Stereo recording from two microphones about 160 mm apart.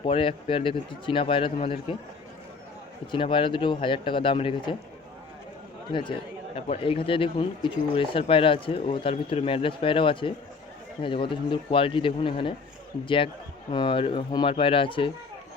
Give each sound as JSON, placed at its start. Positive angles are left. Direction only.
{"t": 0.0, "sound": "speech", "side_deg": 35}
{"t": 3.1, "sound": "speech", "side_deg": 30}
{"t": 5.9, "sound": "speech", "side_deg": 30}